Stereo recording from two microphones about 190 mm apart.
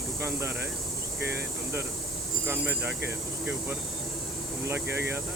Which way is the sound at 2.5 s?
10° right (ahead or behind).